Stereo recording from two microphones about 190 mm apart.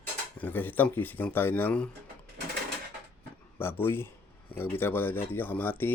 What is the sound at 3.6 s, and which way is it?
Speech, 10° left (ahead or behind).